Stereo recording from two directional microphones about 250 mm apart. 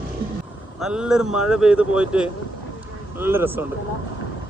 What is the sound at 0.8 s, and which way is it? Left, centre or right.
Speech, centre.